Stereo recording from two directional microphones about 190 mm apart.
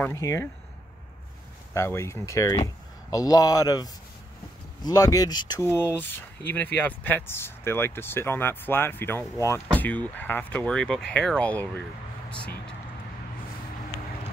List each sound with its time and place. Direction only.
0.0 s speech: 15° left (ahead or behind)
1.7 s speech: 15° left (ahead or behind)